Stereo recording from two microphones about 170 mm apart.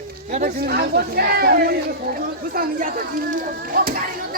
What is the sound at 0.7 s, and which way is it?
Speech, 70° right (ahead or behind).